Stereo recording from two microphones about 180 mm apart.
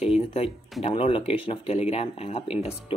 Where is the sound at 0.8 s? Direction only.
30° left (ahead or behind).